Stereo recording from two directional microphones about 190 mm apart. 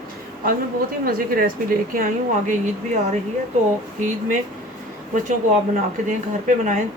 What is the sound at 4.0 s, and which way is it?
Speech, 45° right (ahead or behind).